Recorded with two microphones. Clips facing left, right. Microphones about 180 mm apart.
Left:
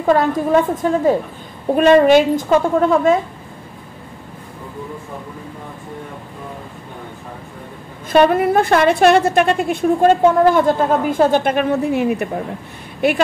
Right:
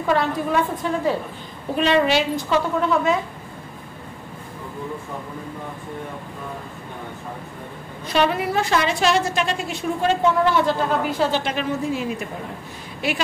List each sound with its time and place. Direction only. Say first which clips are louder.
0.0 s a woman's voice: left 6 dB; 45° left (ahead or behind)
8.1 s a woman's voice: left 8 dB; 50° left (ahead or behind)